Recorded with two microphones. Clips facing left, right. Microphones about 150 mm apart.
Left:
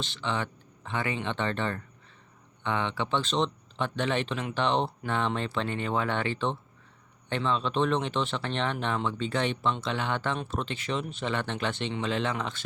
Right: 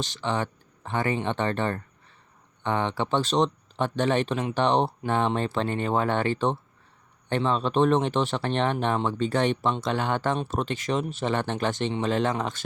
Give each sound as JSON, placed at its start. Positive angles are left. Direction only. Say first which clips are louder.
{"t": 0.0, "sound": "speech", "louder": "right 4 dB", "side_deg": -40}